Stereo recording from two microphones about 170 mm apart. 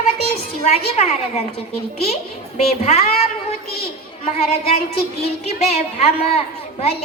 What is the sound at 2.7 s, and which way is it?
Speech, 40° left (ahead or behind).